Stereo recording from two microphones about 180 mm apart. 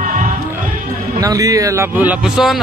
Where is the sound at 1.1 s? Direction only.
20° right (ahead or behind); by 2.5 s 5° right (ahead or behind).